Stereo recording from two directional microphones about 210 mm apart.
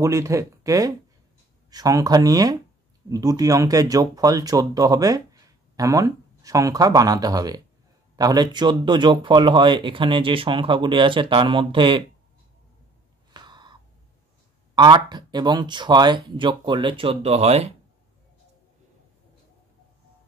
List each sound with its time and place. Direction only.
0.0 s speech: 15° right (ahead or behind)
13.3 s a sound: 20° right (ahead or behind)
14.8 s speech: 20° right (ahead or behind)